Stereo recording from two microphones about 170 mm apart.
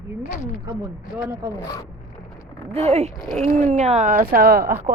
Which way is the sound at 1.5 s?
15° left (ahead or behind).